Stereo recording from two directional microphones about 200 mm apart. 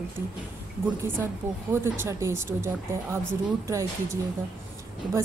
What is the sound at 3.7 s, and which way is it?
Speech, 15° right (ahead or behind).